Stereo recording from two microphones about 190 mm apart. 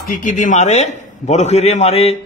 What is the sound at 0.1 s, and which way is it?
A man's voice, 45° left (ahead or behind).